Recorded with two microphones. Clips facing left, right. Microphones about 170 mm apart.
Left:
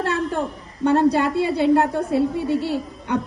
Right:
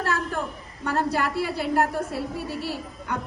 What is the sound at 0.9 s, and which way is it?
A woman's voice, 25° left (ahead or behind).